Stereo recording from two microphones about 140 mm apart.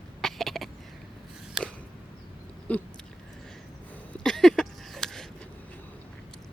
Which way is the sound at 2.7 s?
10° left (ahead or behind).